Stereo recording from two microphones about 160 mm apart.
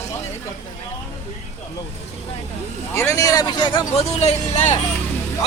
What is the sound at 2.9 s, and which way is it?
A man's voice, 20° left (ahead or behind).